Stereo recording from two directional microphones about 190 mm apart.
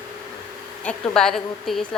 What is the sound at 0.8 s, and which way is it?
A woman's voice, 5° left (ahead or behind).